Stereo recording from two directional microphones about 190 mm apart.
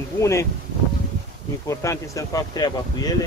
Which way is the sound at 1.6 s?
15° left (ahead or behind).